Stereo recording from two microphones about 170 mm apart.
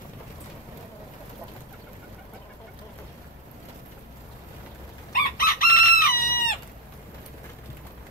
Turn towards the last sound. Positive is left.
turn(degrees=60)  # may be behind; listen again after turning